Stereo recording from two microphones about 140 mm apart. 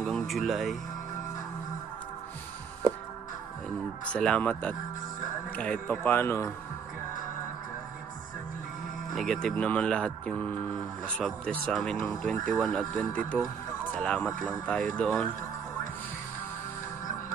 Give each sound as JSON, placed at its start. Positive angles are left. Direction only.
{"t": 0.0, "sound": "speech", "side_deg": 0}
{"t": 4.1, "sound": "speech", "side_deg": 10}
{"t": 9.1, "sound": "speech", "side_deg": 5}